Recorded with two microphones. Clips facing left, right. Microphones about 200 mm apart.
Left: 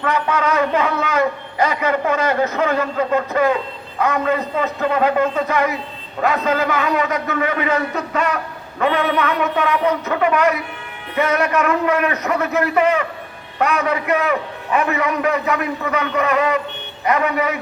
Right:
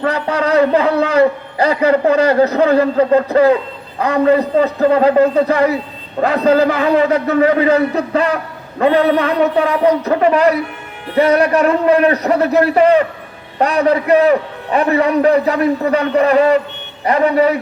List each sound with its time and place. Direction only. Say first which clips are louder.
0.0 s a man's voice: right 3 dB; 35° right (ahead or behind)